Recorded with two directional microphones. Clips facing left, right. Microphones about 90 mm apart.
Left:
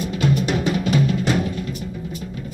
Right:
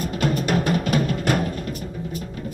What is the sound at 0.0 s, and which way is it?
Music, 45° right (ahead or behind).